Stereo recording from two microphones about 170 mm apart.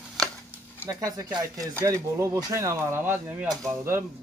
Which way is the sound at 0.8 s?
20° right (ahead or behind).